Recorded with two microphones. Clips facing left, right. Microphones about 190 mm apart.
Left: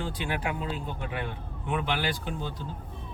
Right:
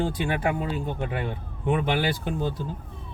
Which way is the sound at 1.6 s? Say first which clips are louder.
Right 5 dB; 55° right (ahead or behind).